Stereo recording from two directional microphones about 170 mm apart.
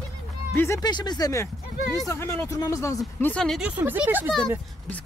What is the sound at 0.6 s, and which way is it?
Speech, 20° left (ahead or behind).